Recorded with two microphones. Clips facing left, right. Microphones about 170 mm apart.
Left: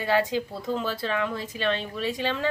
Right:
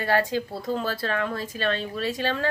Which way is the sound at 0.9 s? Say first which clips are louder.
Right 1 dB; 15° left (ahead or behind).